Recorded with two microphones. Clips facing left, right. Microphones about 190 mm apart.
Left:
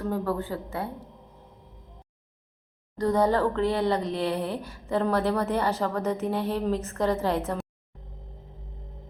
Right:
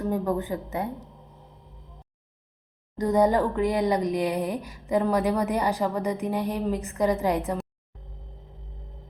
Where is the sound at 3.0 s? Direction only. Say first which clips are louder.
Right 2 dB; 20° right (ahead or behind).